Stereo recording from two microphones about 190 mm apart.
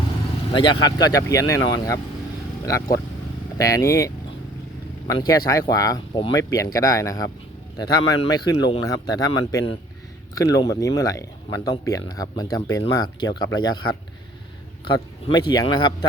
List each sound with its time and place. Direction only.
0.5 s speech: 25° left (ahead or behind)